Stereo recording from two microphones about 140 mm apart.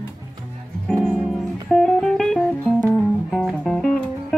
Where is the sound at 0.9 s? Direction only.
Centre (ahead or behind).